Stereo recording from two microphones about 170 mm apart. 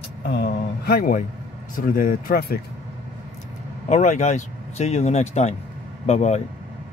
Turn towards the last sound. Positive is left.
turn(degrees=40)  # may be behind; listen again after turning